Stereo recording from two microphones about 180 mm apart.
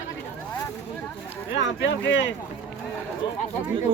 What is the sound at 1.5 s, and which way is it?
Speech, 90° left.